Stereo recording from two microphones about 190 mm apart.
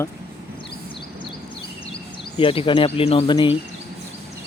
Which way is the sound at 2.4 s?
30° left (ahead or behind).